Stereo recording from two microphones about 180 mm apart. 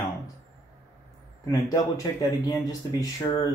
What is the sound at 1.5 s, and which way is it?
Speech, 20° left (ahead or behind).